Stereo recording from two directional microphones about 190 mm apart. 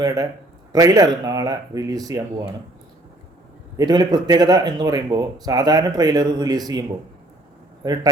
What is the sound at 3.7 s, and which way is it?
Speech, 20° right (ahead or behind).